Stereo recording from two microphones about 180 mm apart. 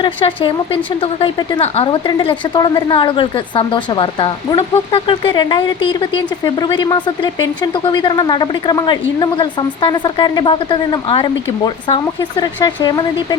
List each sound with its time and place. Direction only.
0.0 s a woman's voice: 30° left (ahead or behind)